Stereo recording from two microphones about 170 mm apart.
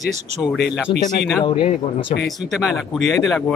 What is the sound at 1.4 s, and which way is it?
Speech, 30° left (ahead or behind).